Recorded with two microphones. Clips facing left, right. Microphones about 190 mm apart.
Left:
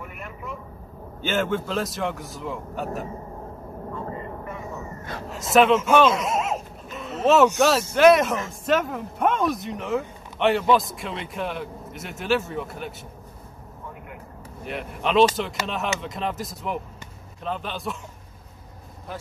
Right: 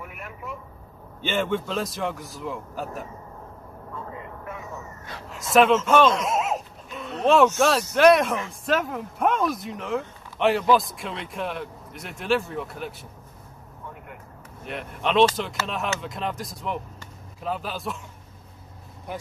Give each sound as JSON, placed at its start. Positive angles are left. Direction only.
{"t": 0.0, "sound": "vehicle", "side_deg": -5}
{"t": 1.2, "sound": "speech", "side_deg": 0}
{"t": 5.0, "sound": "a sound", "side_deg": 50}
{"t": 5.5, "sound": "speech", "side_deg": 0}
{"t": 5.8, "sound": "dog", "side_deg": 5}
{"t": 7.5, "sound": "speech", "side_deg": 0}
{"t": 14.6, "sound": "speech", "side_deg": 0}